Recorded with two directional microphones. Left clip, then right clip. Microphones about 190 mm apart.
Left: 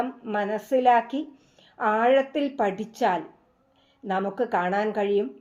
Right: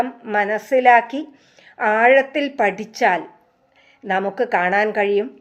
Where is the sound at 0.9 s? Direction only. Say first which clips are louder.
Right 7 dB; 40° right (ahead or behind).